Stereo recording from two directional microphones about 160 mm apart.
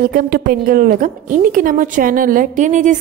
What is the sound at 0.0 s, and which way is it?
A woman's voice, 65° right (ahead or behind).